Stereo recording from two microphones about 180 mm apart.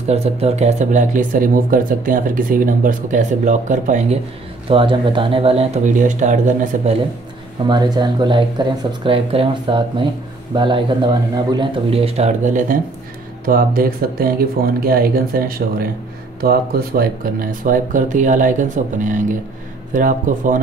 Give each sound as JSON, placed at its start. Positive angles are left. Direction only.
{"t": 0.1, "sound": "speech", "side_deg": -35}
{"t": 4.6, "sound": "a man's voice", "side_deg": -30}
{"t": 5.9, "sound": "speech", "side_deg": -45}
{"t": 7.6, "sound": "a man's voice", "side_deg": -25}